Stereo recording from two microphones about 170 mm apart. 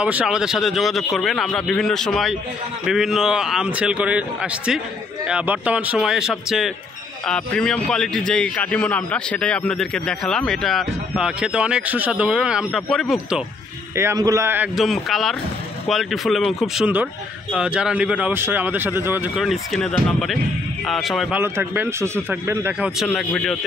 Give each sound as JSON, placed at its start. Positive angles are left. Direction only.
{"t": 0.0, "sound": "speech", "side_deg": -5}
{"t": 13.9, "sound": "a man's voice", "side_deg": -20}
{"t": 14.8, "sound": "a man's voice", "side_deg": 0}
{"t": 21.4, "sound": "a man's voice", "side_deg": -15}
{"t": 22.9, "sound": "speech", "side_deg": 0}